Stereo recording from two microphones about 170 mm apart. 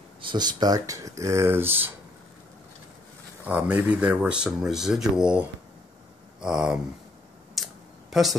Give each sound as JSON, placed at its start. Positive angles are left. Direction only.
{"t": 0.2, "sound": "speech", "side_deg": -25}
{"t": 3.4, "sound": "speech", "side_deg": -10}
{"t": 6.4, "sound": "speech", "side_deg": -5}
{"t": 7.5, "sound": "a sound", "side_deg": 0}